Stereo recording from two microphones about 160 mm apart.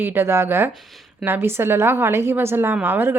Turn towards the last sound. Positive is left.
turn(degrees=-15)  # may be behind; listen again after turning